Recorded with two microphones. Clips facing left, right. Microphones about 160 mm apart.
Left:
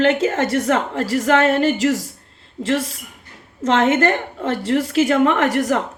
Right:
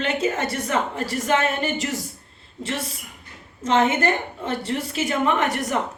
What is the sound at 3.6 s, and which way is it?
A woman's voice, 80° left.